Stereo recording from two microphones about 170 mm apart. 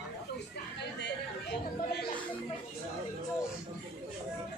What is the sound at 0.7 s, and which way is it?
Chatter, 80° left.